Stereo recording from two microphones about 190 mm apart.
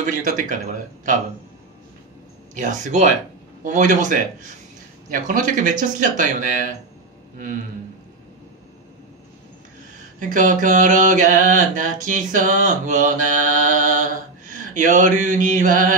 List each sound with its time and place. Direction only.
0.0 s mantra: 45° right (ahead or behind)
2.5 s speech: 40° right (ahead or behind)
5.1 s mantra: 45° right (ahead or behind)
10.1 s mantra: 45° right (ahead or behind)